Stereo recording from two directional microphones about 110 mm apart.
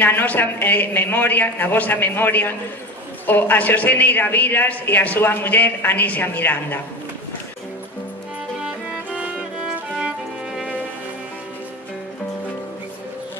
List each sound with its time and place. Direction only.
0.0 s a man's voice: 20° left (ahead or behind)
8.6 s music: 10° right (ahead or behind)